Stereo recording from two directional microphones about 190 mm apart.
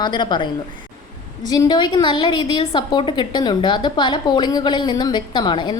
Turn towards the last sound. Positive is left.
turn(degrees=25)  # may be behind; listen again after turning